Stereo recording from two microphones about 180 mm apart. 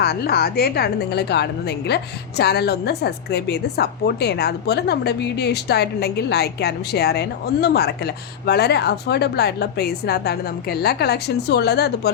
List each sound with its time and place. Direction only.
0.0 s a woman's voice: 60° left (ahead or behind)